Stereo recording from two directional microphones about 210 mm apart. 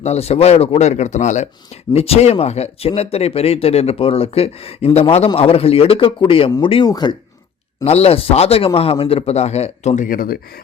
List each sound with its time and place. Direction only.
0.0 s speech: 30° left (ahead or behind)